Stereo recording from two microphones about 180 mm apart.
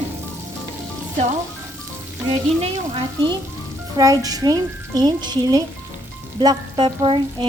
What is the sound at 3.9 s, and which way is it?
Speech, 20° right (ahead or behind).